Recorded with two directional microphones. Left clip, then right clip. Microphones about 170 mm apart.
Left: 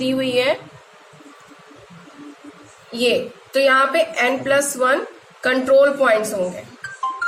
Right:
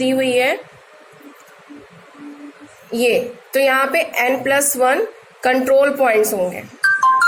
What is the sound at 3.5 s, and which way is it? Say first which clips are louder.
A woman's voice: even; 35° right (ahead or behind).